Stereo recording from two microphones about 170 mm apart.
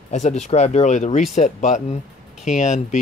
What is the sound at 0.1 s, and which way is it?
Speech, 45° left (ahead or behind).